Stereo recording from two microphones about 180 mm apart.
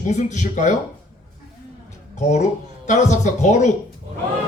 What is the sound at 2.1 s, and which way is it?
Speech, 40° left (ahead or behind).